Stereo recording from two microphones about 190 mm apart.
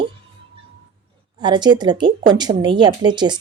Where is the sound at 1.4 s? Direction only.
25° right (ahead or behind).